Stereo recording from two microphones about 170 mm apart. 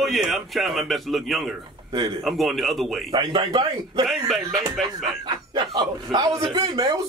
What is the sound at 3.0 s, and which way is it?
A man's voice, 30° right (ahead or behind).